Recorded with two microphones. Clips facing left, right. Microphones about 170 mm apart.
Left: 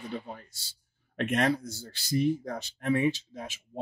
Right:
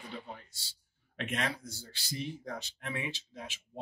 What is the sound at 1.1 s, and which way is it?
Speech, 50° left (ahead or behind).